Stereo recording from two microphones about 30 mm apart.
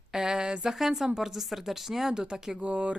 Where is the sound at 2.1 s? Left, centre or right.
Right.